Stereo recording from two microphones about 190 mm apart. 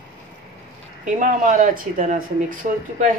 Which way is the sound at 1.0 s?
40° right (ahead or behind).